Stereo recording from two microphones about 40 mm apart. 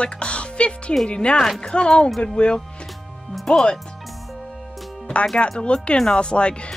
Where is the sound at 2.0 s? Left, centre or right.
Centre.